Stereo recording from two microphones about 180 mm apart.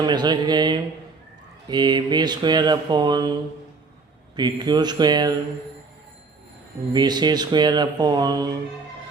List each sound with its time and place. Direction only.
0.0 s speech: 25° right (ahead or behind)
4.4 s speech: 25° right (ahead or behind)
6.9 s speech: 25° right (ahead or behind)